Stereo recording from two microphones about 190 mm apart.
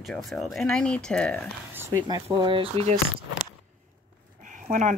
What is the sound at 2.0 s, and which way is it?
Speech, 20° right (ahead or behind).